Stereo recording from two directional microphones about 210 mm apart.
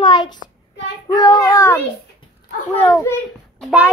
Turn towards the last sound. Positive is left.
turn(degrees=-5)  # may be behind; listen again after turning